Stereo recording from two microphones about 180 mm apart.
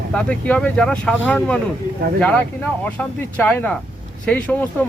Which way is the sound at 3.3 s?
10° left (ahead or behind).